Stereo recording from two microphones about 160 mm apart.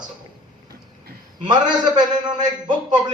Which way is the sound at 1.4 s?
25° right (ahead or behind).